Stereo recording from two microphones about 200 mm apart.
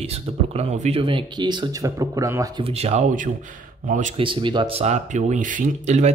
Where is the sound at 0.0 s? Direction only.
30° right (ahead or behind); by 2.6 s 15° right (ahead or behind).